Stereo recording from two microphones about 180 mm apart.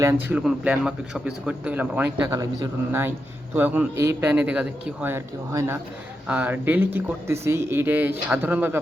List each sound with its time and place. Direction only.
0.0 s a man's voice: 15° right (ahead or behind)